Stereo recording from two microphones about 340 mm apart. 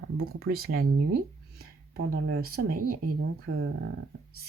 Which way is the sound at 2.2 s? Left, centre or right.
Right.